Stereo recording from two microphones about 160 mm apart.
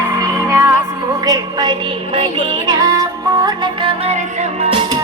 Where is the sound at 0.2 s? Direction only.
20° right (ahead or behind); by 4.9 s 35° right (ahead or behind).